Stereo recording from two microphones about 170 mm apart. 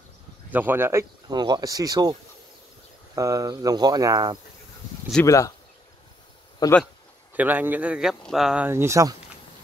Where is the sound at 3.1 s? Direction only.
20° right (ahead or behind).